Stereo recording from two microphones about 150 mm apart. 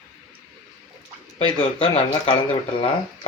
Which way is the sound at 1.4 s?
35° left (ahead or behind).